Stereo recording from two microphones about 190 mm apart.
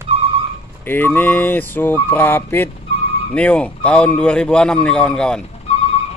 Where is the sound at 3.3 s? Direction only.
5° left (ahead or behind).